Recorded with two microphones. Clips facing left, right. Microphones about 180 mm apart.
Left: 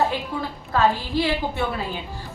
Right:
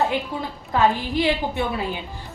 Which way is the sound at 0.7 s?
15° right (ahead or behind).